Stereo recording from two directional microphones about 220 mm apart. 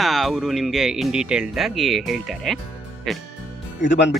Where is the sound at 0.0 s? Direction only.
Centre (ahead or behind).